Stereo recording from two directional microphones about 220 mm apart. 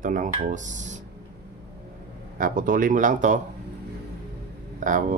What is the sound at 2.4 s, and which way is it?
Speech, 40° right (ahead or behind).